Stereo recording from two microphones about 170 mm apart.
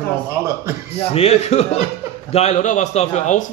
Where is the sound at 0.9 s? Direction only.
35° left (ahead or behind).